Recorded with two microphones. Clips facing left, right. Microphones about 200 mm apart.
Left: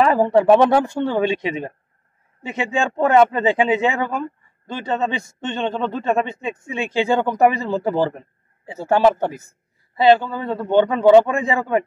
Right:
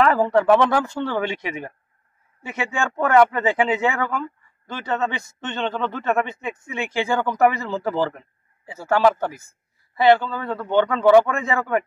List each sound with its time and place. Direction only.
0.0 s speech: 20° left (ahead or behind)
0.8 s a man's voice: 15° left (ahead or behind)